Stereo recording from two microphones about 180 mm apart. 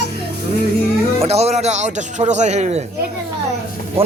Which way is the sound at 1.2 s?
35° right (ahead or behind).